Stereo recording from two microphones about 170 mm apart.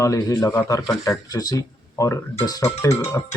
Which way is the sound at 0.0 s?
20° left (ahead or behind).